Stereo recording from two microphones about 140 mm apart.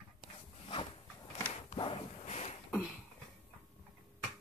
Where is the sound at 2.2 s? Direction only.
55° left (ahead or behind).